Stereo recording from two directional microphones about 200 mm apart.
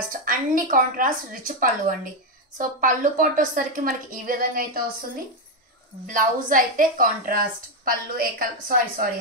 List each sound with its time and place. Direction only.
0.1 s a woman's voice: 45° right (ahead or behind)
6.0 s a woman's voice: 40° right (ahead or behind)